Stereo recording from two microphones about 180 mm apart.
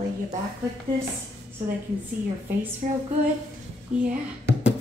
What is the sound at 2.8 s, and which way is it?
Female singing, 45° right (ahead or behind).